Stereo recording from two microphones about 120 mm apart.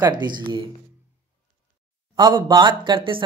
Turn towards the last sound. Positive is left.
turn(degrees=-45)  # may be behind; listen again after turning